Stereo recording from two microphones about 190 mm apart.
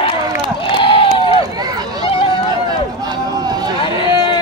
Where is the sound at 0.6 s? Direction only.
25° left (ahead or behind).